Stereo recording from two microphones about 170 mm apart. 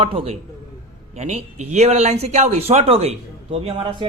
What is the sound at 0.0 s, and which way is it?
Speech, 35° right (ahead or behind).